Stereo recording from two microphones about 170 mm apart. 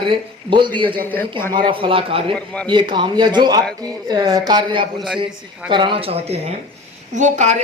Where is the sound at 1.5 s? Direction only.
30° right (ahead or behind).